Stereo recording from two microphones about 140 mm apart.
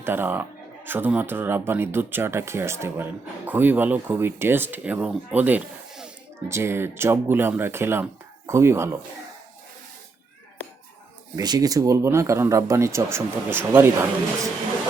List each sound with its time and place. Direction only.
0.0 s speech: 15° right (ahead or behind)
6.5 s speech: 20° right (ahead or behind)
11.3 s speech: 30° right (ahead or behind)